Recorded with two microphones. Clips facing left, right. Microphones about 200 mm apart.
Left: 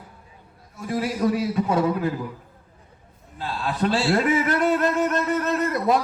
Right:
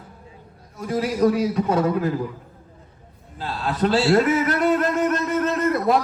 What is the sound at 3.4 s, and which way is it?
A man's voice, 45° right (ahead or behind).